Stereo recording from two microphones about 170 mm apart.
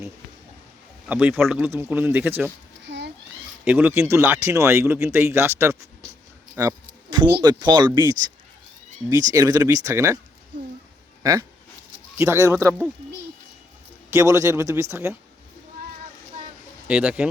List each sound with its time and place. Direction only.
1.0 s speech: 10° right (ahead or behind)
2.8 s a sound: 90° right
3.6 s speech: 10° right (ahead or behind); by 8.1 s 25° right (ahead or behind)
9.3 s speech: 20° right (ahead or behind)
11.2 s speech: 20° right (ahead or behind)
14.1 s speech: 15° right (ahead or behind)
16.9 s speech: 5° right (ahead or behind)